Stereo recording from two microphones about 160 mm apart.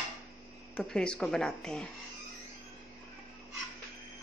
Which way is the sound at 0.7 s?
5° left (ahead or behind).